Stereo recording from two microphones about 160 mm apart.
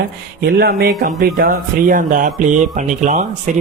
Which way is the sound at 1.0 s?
65° right (ahead or behind).